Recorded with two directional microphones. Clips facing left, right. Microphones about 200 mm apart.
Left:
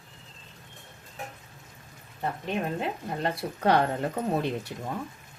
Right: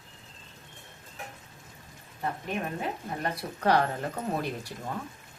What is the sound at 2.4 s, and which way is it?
A woman's voice, 25° left (ahead or behind).